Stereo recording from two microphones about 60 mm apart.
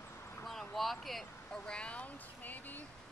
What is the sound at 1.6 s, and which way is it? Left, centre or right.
Speech, centre.